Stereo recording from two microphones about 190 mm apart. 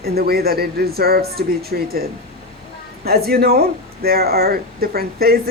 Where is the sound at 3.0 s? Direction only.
55° right (ahead or behind).